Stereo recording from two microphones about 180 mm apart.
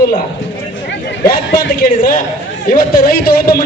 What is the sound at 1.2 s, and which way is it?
A man's voice, 55° left (ahead or behind).